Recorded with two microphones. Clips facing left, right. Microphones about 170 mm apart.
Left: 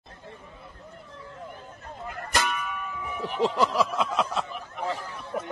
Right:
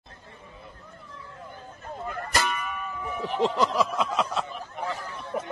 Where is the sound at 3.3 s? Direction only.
5° left (ahead or behind).